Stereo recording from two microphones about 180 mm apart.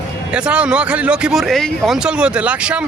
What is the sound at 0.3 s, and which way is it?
Speech, 5° right (ahead or behind).